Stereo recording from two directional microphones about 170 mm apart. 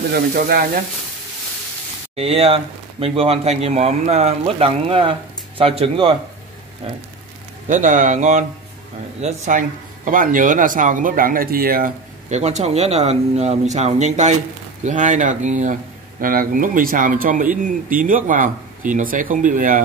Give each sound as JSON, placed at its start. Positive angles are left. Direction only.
{"t": 0.1, "sound": "frying", "side_deg": -65}
{"t": 2.1, "sound": "speech", "side_deg": -35}
{"t": 7.6, "sound": "speech", "side_deg": -50}
{"t": 12.3, "sound": "speech", "side_deg": -40}